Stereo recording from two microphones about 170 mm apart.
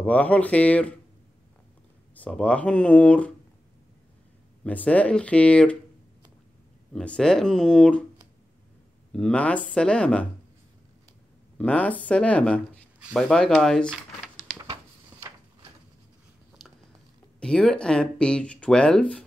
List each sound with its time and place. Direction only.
0.0 s speech: 10° left (ahead or behind)
2.1 s speech: 10° left (ahead or behind)
4.6 s speech: 10° left (ahead or behind)
6.9 s speech: 5° left (ahead or behind)
9.1 s speech: 5° left (ahead or behind)
11.5 s speech: 5° left (ahead or behind)
14.6 s a sound: 20° right (ahead or behind)
17.4 s speech: 5° left (ahead or behind)